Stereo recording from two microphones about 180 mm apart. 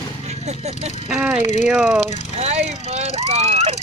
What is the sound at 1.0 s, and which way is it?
Speech, 5° right (ahead or behind).